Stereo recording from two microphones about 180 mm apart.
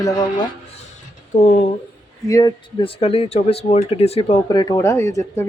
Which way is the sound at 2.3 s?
20° left (ahead or behind).